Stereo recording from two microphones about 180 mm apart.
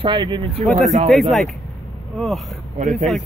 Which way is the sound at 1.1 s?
Centre (ahead or behind).